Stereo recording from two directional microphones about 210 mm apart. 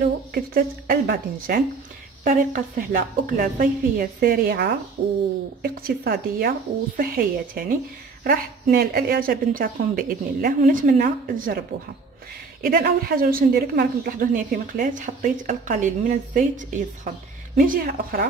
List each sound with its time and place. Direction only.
0.0 s a woman's voice: 45° right (ahead or behind)
5.0 s speech: 25° right (ahead or behind)
5.6 s a woman's voice: 45° right (ahead or behind)
12.6 s a woman's voice: 45° right (ahead or behind)